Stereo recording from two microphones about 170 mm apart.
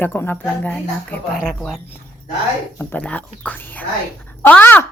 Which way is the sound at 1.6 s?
10° left (ahead or behind).